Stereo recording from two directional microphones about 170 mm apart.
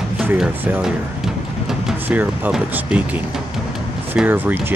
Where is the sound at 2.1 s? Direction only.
10° right (ahead or behind).